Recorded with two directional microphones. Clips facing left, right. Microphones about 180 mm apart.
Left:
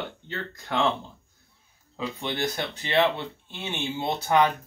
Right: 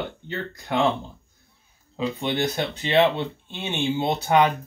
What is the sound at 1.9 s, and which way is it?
Speech, 20° right (ahead or behind).